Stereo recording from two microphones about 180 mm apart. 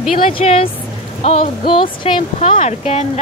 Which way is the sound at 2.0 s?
30° left (ahead or behind).